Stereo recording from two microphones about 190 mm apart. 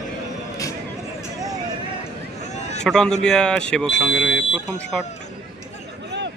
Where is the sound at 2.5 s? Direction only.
35° left (ahead or behind).